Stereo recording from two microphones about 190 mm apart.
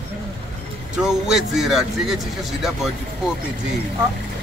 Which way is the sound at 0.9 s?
5° right (ahead or behind).